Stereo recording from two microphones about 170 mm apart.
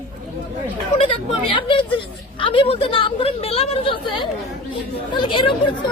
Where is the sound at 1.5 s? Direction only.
30° left (ahead or behind).